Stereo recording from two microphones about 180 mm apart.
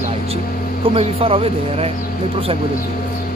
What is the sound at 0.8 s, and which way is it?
Speech, 30° right (ahead or behind).